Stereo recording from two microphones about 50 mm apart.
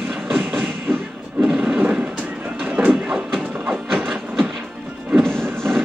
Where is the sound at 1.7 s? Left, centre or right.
Right.